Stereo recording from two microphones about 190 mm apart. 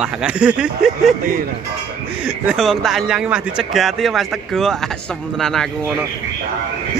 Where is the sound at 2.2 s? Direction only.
5° right (ahead or behind).